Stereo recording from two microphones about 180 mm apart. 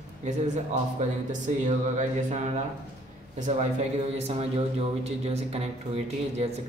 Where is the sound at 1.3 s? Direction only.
40° right (ahead or behind).